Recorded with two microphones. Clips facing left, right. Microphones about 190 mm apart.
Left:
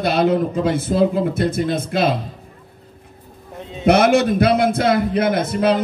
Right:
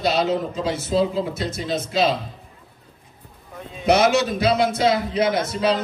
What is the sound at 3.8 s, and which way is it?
Speech, 55° left (ahead or behind).